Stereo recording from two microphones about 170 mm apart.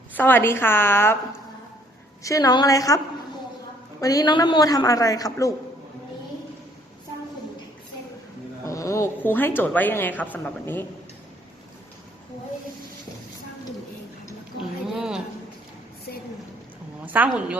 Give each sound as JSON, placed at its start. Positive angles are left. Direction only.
{"t": 0.2, "sound": "a woman's voice", "side_deg": 10}
{"t": 2.2, "sound": "a man's voice", "side_deg": 20}
{"t": 4.0, "sound": "a man's voice", "side_deg": 20}
{"t": 8.6, "sound": "a woman's voice", "side_deg": 20}
{"t": 14.6, "sound": "a sound", "side_deg": -5}
{"t": 17.2, "sound": "a woman's voice", "side_deg": -10}